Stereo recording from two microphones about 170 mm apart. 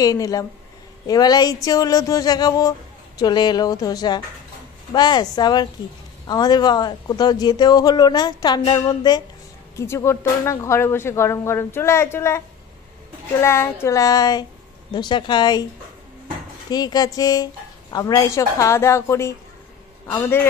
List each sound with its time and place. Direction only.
0.0 s a man's voice: 20° left (ahead or behind)
13.4 s a woman's voice: 15° left (ahead or behind)
16.7 s a man's voice: 25° left (ahead or behind)